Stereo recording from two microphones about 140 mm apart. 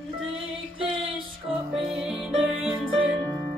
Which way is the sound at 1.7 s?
Centre (ahead or behind).